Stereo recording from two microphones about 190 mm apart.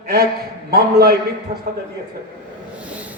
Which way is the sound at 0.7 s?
55° right (ahead or behind).